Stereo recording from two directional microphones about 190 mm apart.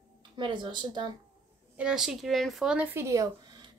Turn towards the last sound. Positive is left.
turn(degrees=-20)  # may be behind; listen again after turning